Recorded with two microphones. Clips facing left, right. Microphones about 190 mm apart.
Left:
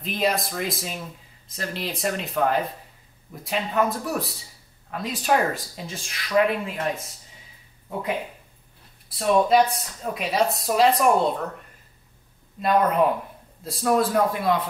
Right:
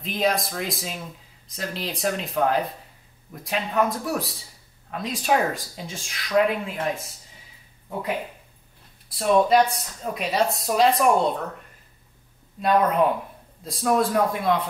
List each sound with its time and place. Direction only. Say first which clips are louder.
0.0 s speech: right 1 dB; centre (ahead or behind)
12.5 s speech: even; centre (ahead or behind)